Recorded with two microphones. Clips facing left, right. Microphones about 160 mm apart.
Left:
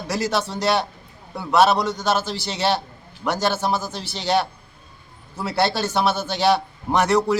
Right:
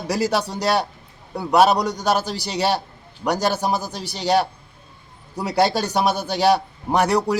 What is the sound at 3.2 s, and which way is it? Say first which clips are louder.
A man's voice: right 1 dB; 15° right (ahead or behind).